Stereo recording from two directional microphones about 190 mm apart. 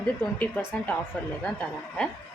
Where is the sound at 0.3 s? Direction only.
10° left (ahead or behind).